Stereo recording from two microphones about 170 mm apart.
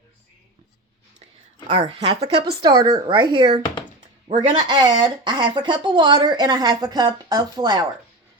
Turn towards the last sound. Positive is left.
turn(degrees=-25)  # may be behind; listen again after turning